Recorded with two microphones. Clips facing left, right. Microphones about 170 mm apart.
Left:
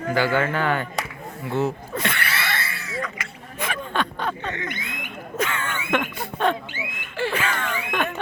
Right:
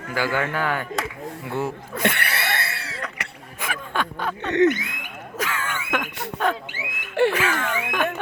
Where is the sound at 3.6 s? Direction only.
10° right (ahead or behind).